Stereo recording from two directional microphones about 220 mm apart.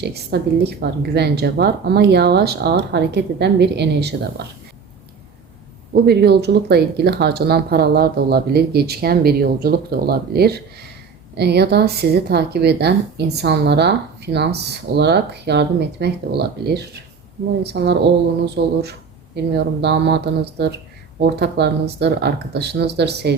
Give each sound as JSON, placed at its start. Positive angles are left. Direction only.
{"t": 0.0, "sound": "speech", "side_deg": -50}
{"t": 5.9, "sound": "speech", "side_deg": -50}